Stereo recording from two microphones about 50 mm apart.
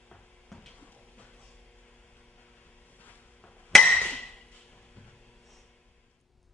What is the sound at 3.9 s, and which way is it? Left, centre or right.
Music, left.